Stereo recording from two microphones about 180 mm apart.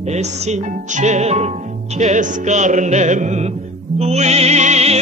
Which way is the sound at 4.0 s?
35° right (ahead or behind).